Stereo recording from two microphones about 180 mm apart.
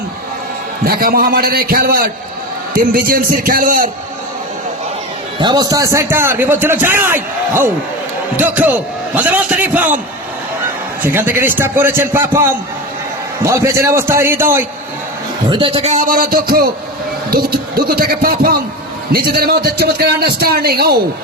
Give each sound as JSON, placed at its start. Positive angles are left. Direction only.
{"t": 0.9, "sound": "a man's voice", "side_deg": -55}
{"t": 5.4, "sound": "a man's voice", "side_deg": -25}
{"t": 11.0, "sound": "a man's voice", "side_deg": -10}
{"t": 15.4, "sound": "a man's voice", "side_deg": -30}